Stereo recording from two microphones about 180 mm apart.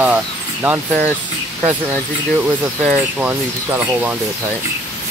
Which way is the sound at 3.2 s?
10° right (ahead or behind).